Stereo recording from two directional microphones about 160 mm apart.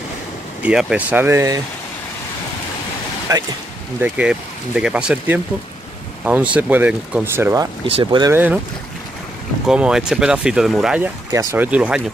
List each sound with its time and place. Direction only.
0.6 s speech: 5° right (ahead or behind)
3.3 s speech: 20° right (ahead or behind)
4.0 s speech: 5° right (ahead or behind)
6.5 s speech: 10° right (ahead or behind)
7.8 s speech: 35° right (ahead or behind)
8.3 s speech: 10° right (ahead or behind)
9.7 s speech: 5° right (ahead or behind)